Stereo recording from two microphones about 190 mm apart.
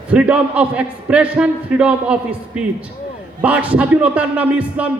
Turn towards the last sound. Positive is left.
turn(degrees=-5)  # may be behind; listen again after turning